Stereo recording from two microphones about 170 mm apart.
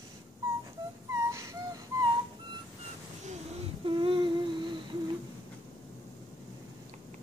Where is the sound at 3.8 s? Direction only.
30° right (ahead or behind).